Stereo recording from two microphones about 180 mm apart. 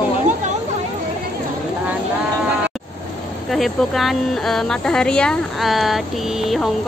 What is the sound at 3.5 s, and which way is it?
Speech, centre (ahead or behind).